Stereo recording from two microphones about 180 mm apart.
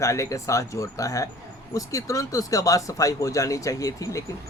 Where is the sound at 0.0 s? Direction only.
15° left (ahead or behind).